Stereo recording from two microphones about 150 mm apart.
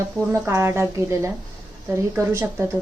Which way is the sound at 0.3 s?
15° right (ahead or behind).